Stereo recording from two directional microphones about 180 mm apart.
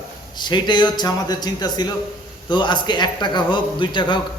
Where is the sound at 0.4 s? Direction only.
25° left (ahead or behind).